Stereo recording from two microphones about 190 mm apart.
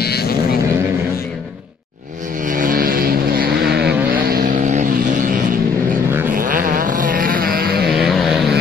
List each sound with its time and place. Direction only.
0.0 s a sound: 55° left (ahead or behind)
2.4 s vehicle: 45° right (ahead or behind)
6.3 s vehicle: 45° right (ahead or behind)
7.9 s vehicle: centre (ahead or behind)